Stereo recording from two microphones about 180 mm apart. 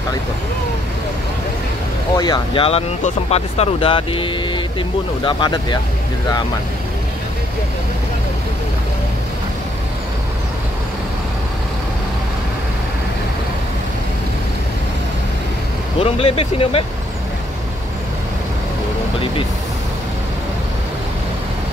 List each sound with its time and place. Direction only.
2.1 s speech: 20° left (ahead or behind)
16.0 s speech: 30° left (ahead or behind)